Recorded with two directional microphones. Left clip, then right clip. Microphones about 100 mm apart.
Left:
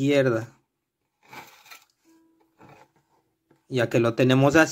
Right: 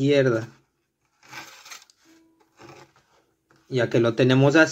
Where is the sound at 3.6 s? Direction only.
90° left; by 4.6 s 75° left (ahead or behind).